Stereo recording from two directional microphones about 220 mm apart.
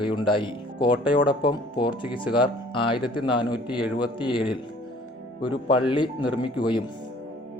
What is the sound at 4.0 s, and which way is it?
Speech, 20° left (ahead or behind).